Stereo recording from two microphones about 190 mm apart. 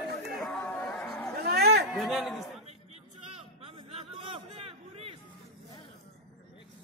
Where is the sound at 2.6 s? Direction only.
35° right (ahead or behind).